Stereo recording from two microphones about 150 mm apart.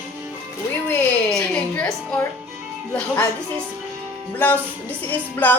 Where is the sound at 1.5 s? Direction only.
5° left (ahead or behind).